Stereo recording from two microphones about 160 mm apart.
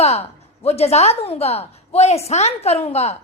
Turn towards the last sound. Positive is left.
turn(degrees=40)  # may be behind; listen again after turning